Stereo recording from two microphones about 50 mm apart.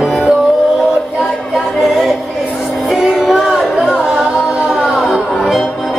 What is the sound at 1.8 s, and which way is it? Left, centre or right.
Music, centre.